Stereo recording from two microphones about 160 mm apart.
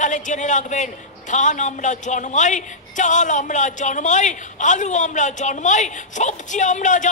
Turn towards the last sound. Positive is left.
turn(degrees=50)  # may be behind; listen again after turning